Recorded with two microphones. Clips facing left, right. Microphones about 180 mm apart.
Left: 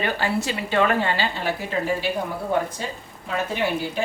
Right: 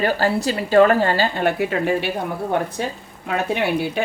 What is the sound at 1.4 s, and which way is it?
Speech, 65° right (ahead or behind).